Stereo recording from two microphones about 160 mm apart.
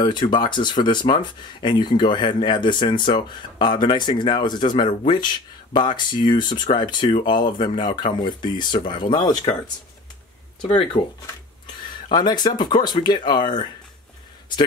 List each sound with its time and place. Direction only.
0.0 s speech: 30° left (ahead or behind)
12.1 s speech: 25° left (ahead or behind)